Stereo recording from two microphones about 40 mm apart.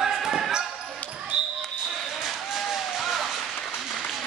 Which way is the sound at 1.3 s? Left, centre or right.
Right.